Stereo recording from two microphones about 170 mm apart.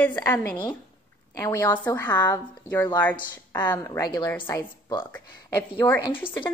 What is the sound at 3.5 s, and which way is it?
A woman's voice, 25° left (ahead or behind).